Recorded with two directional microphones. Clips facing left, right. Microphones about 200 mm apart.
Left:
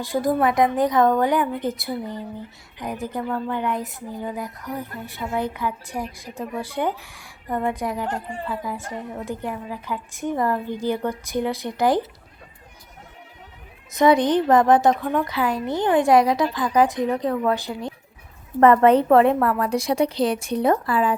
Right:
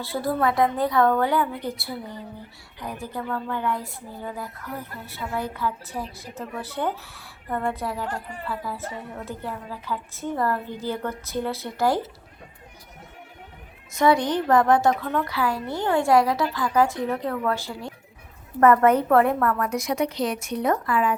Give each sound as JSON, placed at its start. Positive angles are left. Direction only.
{"t": 0.0, "sound": "speech", "side_deg": 15}
{"t": 13.9, "sound": "a woman's voice", "side_deg": 20}